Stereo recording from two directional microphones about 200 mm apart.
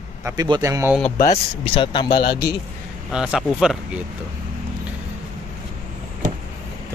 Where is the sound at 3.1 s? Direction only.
5° right (ahead or behind).